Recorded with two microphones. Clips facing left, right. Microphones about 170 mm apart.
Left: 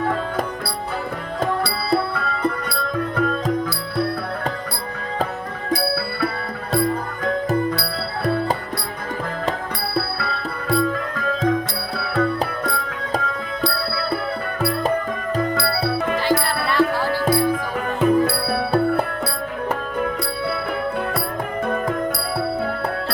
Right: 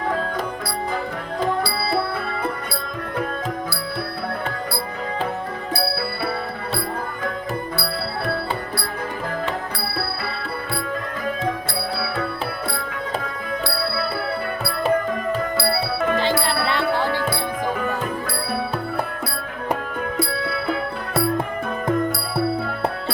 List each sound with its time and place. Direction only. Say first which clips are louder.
16.5 s music: left 2 dB; 25° right (ahead or behind)